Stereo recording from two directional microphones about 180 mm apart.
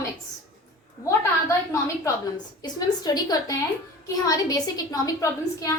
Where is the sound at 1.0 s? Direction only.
15° left (ahead or behind).